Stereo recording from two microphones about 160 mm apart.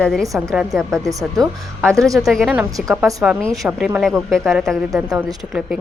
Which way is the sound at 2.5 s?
15° right (ahead or behind).